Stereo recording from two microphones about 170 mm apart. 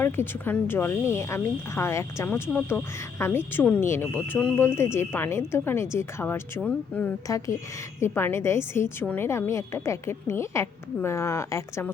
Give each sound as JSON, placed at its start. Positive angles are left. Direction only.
{"t": 0.0, "sound": "speech", "side_deg": 10}
{"t": 7.3, "sound": "speech", "side_deg": 20}